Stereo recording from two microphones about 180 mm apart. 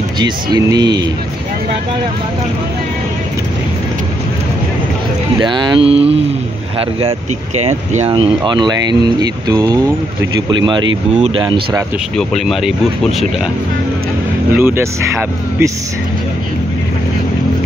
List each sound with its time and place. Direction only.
0.2 s speech: 20° right (ahead or behind)
5.4 s speech: 25° right (ahead or behind)
8.1 s speech: 25° right (ahead or behind)
11.1 s speech: 35° right (ahead or behind)
11.4 s speech: 25° right (ahead or behind)
12.2 s speech: centre (ahead or behind)
14.6 s speech: 15° right (ahead or behind)